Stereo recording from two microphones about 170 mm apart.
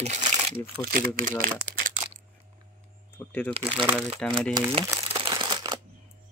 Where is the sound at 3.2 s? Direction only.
10° left (ahead or behind).